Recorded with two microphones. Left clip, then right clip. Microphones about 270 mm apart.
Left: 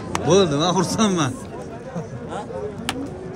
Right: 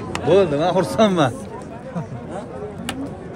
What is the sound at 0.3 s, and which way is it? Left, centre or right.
Speech, centre.